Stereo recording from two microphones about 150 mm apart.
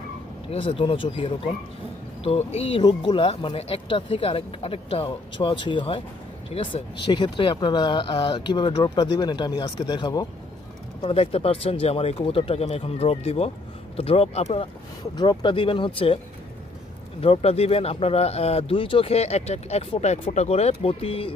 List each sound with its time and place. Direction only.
0.5 s speech: 35° left (ahead or behind)
2.8 s speech: 30° left (ahead or behind)
11.0 s speech: 40° left (ahead or behind)
15.1 s speech: 30° left (ahead or behind)
17.2 s speech: 40° left (ahead or behind)